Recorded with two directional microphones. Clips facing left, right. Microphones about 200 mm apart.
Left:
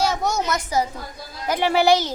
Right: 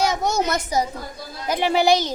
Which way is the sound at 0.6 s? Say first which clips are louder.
Even; 15° right (ahead or behind).